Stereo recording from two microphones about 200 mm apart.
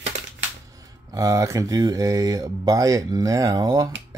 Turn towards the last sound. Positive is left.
turn(degrees=-20)  # may be behind; listen again after turning